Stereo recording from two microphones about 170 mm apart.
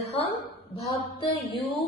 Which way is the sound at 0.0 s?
40° left (ahead or behind).